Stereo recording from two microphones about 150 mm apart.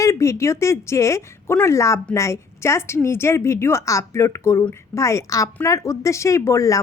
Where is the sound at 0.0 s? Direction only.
20° left (ahead or behind).